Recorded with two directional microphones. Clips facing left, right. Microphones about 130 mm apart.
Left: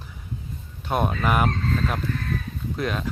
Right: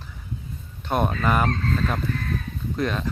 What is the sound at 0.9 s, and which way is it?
Speech, 5° left (ahead or behind).